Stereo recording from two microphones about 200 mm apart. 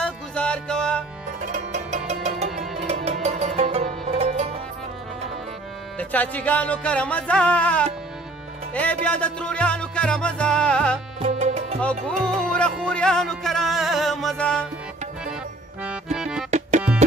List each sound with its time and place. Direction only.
0.0 s music: 5° left (ahead or behind)
1.4 s music: 35° right (ahead or behind)
2.6 s music: centre (ahead or behind)
2.9 s music: 35° right (ahead or behind)
5.9 s music: 5° left (ahead or behind)
11.1 s music: 35° right (ahead or behind)
11.8 s music: 5° left (ahead or behind)
15.8 s accordion: 5° right (ahead or behind)
16.4 s tabla: 35° right (ahead or behind)